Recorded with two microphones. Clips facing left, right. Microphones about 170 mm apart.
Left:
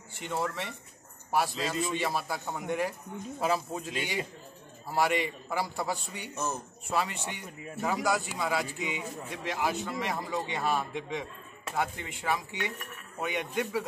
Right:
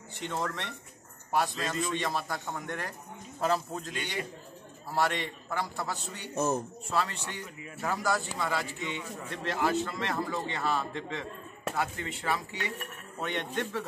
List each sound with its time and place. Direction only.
0.2 s a man's voice: 10° left (ahead or behind)